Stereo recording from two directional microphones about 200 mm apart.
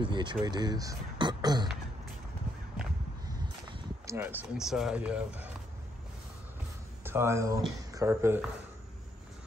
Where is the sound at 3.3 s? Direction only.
20° right (ahead or behind).